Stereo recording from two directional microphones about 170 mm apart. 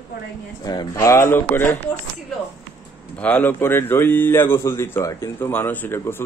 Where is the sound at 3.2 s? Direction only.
10° left (ahead or behind).